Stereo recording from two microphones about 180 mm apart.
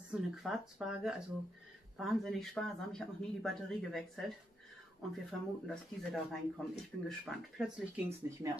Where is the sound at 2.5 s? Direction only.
5° left (ahead or behind).